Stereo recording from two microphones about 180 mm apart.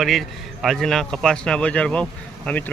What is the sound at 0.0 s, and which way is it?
A man's voice, centre (ahead or behind).